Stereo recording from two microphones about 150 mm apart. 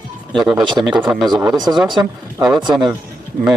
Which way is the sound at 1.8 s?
30° right (ahead or behind).